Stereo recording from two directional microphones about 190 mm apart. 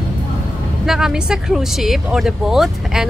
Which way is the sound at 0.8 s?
5° right (ahead or behind).